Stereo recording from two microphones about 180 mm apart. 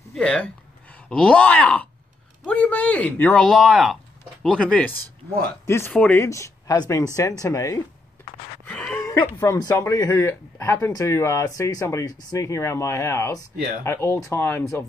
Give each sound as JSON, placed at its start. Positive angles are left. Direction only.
{"t": 0.1, "sound": "speech", "side_deg": 5}
{"t": 8.6, "sound": "a sound", "side_deg": 5}
{"t": 9.0, "sound": "speech", "side_deg": 15}